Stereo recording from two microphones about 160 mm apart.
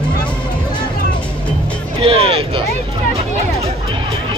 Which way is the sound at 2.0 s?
40° right (ahead or behind).